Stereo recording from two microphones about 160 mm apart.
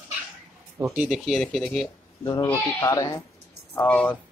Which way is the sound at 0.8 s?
5° right (ahead or behind).